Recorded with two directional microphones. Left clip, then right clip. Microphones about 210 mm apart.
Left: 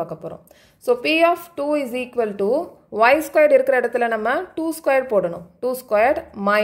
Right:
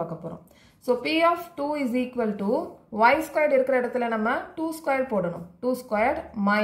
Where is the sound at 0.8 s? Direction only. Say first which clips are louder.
Left 5 dB; 50° left (ahead or behind).